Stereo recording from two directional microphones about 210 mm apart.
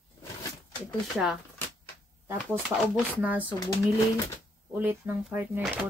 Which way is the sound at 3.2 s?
5° right (ahead or behind).